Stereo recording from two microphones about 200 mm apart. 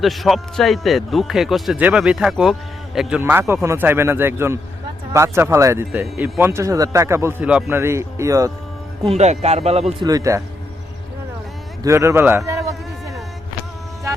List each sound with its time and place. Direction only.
0.0 s a man's voice: centre (ahead or behind); by 8.5 s 15° right (ahead or behind)
9.0 s speech: 35° right (ahead or behind)
10.0 s speech: 20° right (ahead or behind)
11.8 s speech: 15° right (ahead or behind)